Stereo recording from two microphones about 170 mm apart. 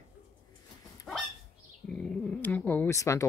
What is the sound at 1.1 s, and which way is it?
Dog, 5° left (ahead or behind).